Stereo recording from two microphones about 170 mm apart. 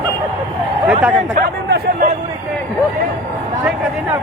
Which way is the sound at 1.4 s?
60° right (ahead or behind).